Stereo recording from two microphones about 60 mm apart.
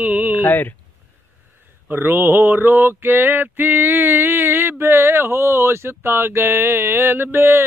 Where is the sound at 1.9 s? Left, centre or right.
Right.